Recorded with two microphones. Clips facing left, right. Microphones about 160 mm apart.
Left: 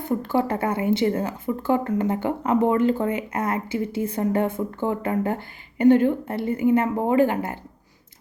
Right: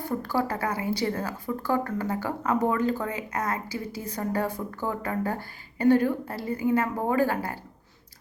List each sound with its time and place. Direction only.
0.0 s a woman's voice: 20° left (ahead or behind)